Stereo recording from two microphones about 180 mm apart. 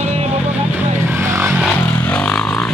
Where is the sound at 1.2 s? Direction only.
15° right (ahead or behind).